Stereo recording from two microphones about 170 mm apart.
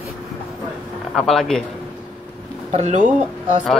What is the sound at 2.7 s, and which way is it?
Speech, 45° right (ahead or behind).